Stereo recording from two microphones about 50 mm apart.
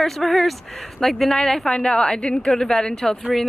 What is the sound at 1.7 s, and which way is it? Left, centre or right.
A woman's voice, centre.